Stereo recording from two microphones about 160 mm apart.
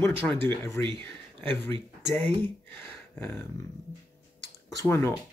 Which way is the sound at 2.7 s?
10° left (ahead or behind).